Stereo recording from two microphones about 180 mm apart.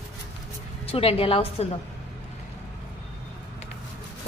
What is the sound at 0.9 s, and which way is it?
Speech, 30° left (ahead or behind).